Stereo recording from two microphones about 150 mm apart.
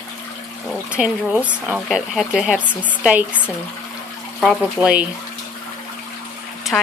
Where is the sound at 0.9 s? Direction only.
10° right (ahead or behind).